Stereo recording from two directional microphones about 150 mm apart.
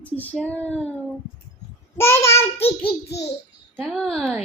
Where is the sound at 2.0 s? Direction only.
15° left (ahead or behind).